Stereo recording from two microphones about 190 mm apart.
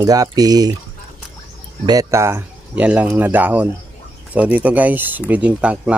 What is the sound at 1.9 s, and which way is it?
Speech, 15° right (ahead or behind).